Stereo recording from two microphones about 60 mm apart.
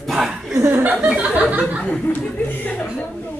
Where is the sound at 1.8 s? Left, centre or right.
Left.